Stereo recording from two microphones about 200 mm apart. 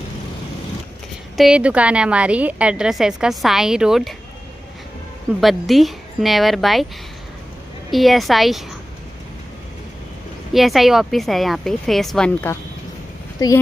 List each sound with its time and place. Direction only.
1.3 s a woman's voice: centre (ahead or behind)
5.4 s a woman's voice: centre (ahead or behind)
7.9 s a woman's voice: centre (ahead or behind)
10.5 s a woman's voice: centre (ahead or behind)
13.4 s a woman's voice: 20° left (ahead or behind)